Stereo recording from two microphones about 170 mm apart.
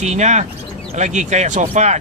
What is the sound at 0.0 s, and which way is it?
Speech, 45° right (ahead or behind).